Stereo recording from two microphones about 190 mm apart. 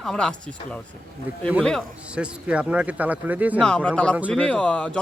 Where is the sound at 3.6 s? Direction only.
5° left (ahead or behind).